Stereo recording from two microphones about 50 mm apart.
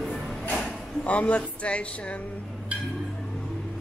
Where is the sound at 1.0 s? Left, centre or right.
Left.